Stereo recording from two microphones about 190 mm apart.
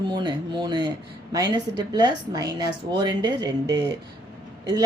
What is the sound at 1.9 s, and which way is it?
Speech, 20° right (ahead or behind).